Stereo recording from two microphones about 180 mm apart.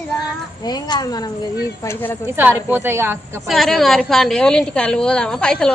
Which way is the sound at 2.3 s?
10° right (ahead or behind).